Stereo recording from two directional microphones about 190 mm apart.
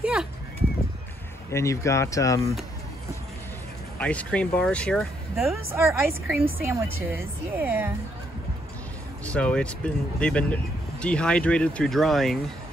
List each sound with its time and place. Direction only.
0.0 s a sound: 5° right (ahead or behind)
1.5 s speech: 15° left (ahead or behind)
4.0 s speech: 5° left (ahead or behind)
5.7 s speech: 10° right (ahead or behind)
9.2 s speech: 5° left (ahead or behind)